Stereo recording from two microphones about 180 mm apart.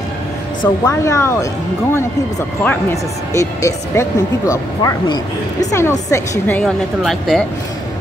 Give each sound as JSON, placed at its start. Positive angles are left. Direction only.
{"t": 0.6, "sound": "speech", "side_deg": 15}
{"t": 2.6, "sound": "speech", "side_deg": 10}